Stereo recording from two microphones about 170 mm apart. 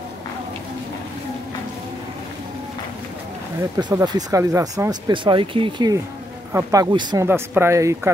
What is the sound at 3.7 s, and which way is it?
Speech, 25° right (ahead or behind).